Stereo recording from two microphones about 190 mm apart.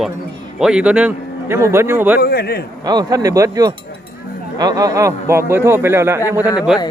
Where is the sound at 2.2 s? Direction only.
55° left (ahead or behind).